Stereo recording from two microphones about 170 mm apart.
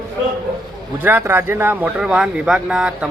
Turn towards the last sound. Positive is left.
turn(degrees=-5)  # may be behind; listen again after turning